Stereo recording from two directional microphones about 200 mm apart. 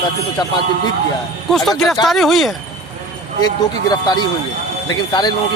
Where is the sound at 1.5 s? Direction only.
Centre (ahead or behind).